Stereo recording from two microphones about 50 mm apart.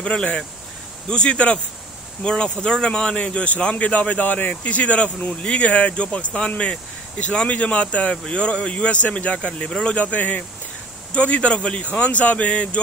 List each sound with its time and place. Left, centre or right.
0.0 s speech: left
9.9 s speech: left